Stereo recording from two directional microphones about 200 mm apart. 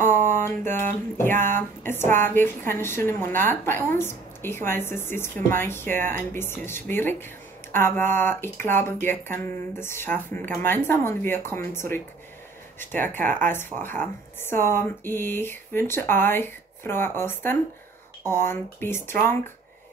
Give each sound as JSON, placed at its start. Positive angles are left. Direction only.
{"t": 1.1, "sound": "a woman's voice", "side_deg": 10}